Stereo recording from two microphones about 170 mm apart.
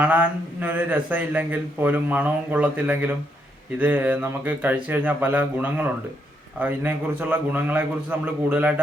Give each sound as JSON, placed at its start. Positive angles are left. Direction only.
{"t": 0.0, "sound": "speech", "side_deg": -10}